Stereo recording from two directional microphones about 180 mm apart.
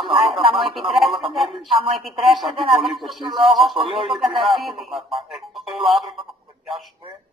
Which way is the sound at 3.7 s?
30° right (ahead or behind).